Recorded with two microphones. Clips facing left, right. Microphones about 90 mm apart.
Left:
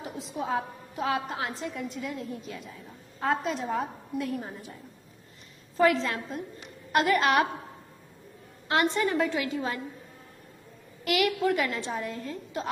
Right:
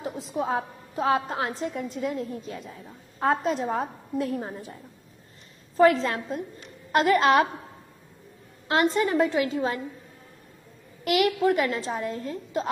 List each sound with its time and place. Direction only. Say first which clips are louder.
0.0 s a woman's voice: right 5 dB; 30° right (ahead or behind)
5.8 s a woman's voice: right 4 dB; 35° right (ahead or behind)
8.6 s a woman's voice: right 3 dB; 35° right (ahead or behind)
11.1 s a woman's voice: right 3 dB; 30° right (ahead or behind)